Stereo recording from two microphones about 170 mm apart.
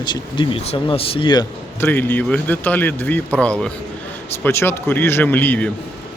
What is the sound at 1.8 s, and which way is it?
Speech, 10° left (ahead or behind).